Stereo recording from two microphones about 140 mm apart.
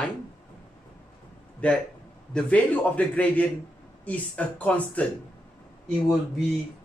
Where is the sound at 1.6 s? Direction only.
10° left (ahead or behind).